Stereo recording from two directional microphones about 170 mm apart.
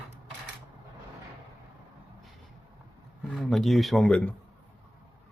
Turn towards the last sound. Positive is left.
turn(degrees=5)  # may be behind; listen again after turning